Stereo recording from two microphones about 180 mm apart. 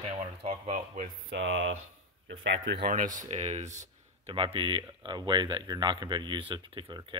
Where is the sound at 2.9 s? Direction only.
50° right (ahead or behind).